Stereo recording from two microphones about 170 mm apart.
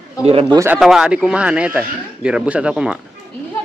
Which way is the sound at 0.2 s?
35° right (ahead or behind).